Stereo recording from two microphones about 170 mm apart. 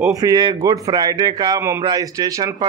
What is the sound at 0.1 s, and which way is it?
A man's voice, 20° right (ahead or behind).